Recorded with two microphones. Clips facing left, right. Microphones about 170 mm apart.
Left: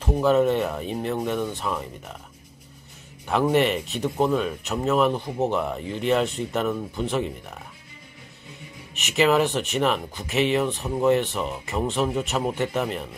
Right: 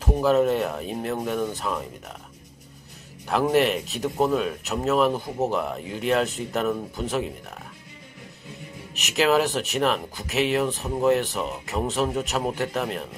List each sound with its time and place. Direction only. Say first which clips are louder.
0.0 s speech: left 1 dB; 5° right (ahead or behind)
3.5 s speech: even; centre (ahead or behind)
8.9 s speech: left 1 dB; centre (ahead or behind)